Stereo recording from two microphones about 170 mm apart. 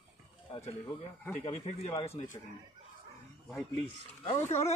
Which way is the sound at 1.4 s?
40° left (ahead or behind).